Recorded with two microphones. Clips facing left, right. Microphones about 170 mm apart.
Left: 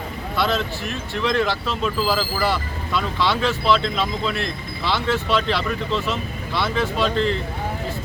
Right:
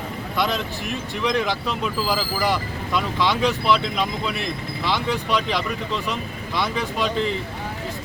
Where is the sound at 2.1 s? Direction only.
15° right (ahead or behind).